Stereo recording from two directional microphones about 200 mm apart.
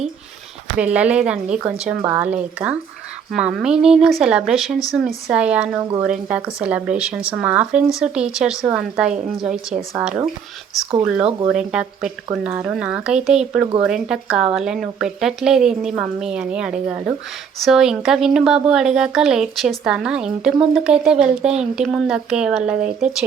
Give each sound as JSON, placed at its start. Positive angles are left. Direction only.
{"t": 0.8, "sound": "speech", "side_deg": -5}